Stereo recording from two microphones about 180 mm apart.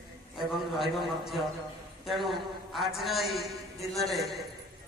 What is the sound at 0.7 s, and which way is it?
A man's voice, centre (ahead or behind).